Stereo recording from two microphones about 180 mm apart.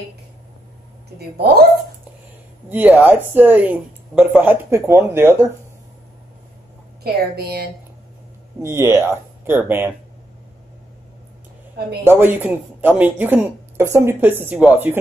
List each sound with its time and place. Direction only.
2.7 s a woman's voice: 10° right (ahead or behind)
7.0 s a woman's voice: 60° right (ahead or behind)
8.5 s a woman's voice: 15° right (ahead or behind)
12.0 s a woman's voice: 10° right (ahead or behind)